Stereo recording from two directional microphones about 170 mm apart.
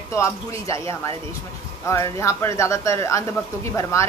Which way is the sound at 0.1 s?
15° left (ahead or behind).